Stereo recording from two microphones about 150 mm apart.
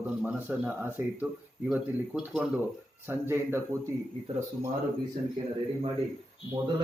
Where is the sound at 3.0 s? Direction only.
15° right (ahead or behind).